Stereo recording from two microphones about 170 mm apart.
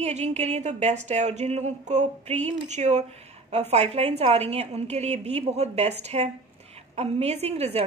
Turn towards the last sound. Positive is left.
turn(degrees=-35)  # may be behind; listen again after turning